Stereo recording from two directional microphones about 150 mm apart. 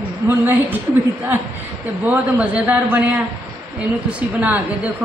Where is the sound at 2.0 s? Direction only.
10° right (ahead or behind).